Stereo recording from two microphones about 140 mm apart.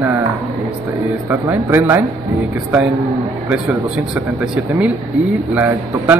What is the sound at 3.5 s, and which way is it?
A man's voice, 5° right (ahead or behind).